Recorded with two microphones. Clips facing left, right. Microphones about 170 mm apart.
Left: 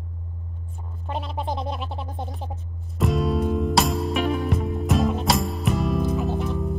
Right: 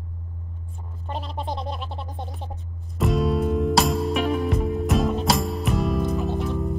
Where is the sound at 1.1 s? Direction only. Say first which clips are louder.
Left 2 dB; 5° left (ahead or behind).